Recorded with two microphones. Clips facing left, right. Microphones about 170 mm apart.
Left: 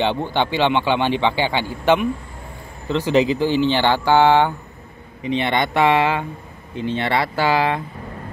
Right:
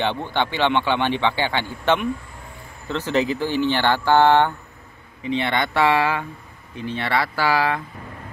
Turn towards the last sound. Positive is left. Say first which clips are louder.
# left 2 dB
turn(degrees=25)  # may be behind; listen again after turning